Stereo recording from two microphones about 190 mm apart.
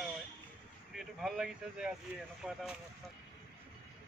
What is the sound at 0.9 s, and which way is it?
Speech, 5° right (ahead or behind).